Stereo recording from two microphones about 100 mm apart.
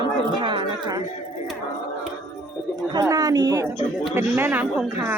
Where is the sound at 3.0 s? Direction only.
35° right (ahead or behind).